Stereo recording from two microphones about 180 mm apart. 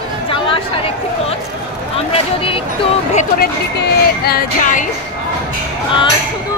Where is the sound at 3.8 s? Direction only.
55° left (ahead or behind).